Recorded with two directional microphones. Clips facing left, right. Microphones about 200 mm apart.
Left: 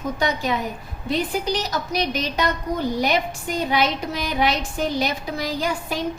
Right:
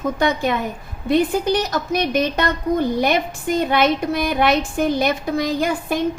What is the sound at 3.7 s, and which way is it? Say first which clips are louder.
A woman's voice: right 3 dB; 55° right (ahead or behind).